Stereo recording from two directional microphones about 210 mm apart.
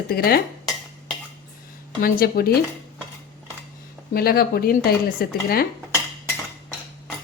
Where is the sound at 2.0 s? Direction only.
45° left (ahead or behind).